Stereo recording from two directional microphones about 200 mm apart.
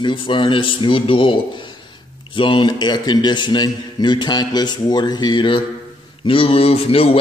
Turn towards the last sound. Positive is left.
turn(degrees=30)  # may be behind; listen again after turning